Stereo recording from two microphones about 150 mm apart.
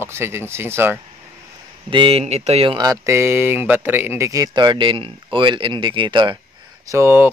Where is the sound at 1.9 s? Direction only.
40° right (ahead or behind).